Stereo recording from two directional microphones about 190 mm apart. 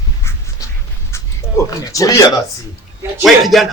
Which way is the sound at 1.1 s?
15° left (ahead or behind).